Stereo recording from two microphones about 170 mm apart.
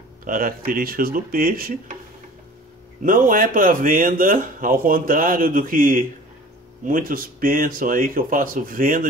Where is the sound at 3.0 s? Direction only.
55° right (ahead or behind).